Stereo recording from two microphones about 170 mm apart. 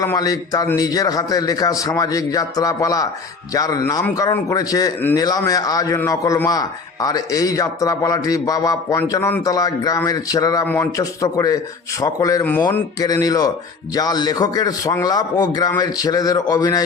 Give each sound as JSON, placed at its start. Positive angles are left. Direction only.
{"t": 0.0, "sound": "a man's voice", "side_deg": 20}